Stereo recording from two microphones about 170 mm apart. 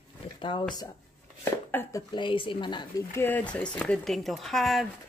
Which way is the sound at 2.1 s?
30° left (ahead or behind).